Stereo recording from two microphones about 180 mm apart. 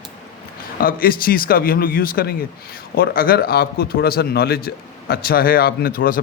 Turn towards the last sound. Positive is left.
turn(degrees=50)  # may be behind; listen again after turning